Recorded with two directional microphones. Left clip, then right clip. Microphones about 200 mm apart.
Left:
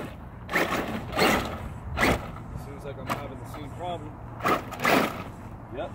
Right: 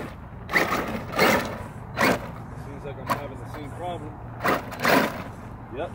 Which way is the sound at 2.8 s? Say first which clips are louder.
Right 1 dB; 55° left (ahead or behind).